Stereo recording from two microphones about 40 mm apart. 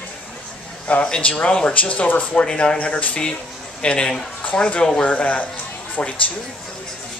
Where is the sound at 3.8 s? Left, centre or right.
Left.